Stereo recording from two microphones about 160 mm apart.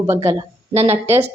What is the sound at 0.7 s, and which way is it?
Speech, 45° right (ahead or behind).